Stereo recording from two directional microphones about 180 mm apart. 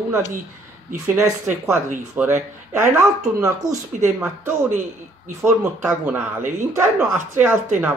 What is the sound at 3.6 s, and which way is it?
Speech, 40° right (ahead or behind).